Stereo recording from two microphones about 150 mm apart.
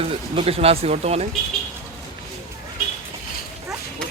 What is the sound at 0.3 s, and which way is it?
Speech, 40° right (ahead or behind).